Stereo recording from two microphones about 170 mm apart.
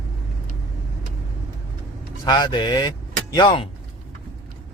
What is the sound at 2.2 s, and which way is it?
Speech, 25° left (ahead or behind).